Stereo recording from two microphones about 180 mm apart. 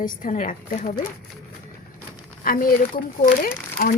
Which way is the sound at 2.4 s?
55° left (ahead or behind).